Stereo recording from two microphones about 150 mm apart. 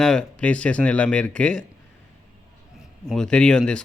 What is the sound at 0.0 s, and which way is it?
Speech, 5° left (ahead or behind).